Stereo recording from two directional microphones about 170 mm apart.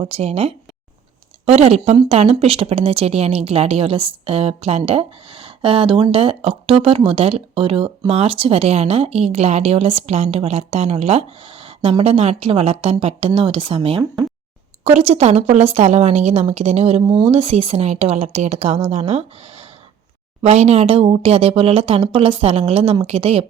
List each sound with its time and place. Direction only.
0.0 s speech: 35° right (ahead or behind)